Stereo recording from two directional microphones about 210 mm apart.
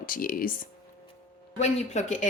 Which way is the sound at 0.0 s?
40° left (ahead or behind).